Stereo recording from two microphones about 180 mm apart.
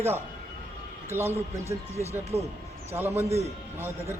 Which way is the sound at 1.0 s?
15° right (ahead or behind).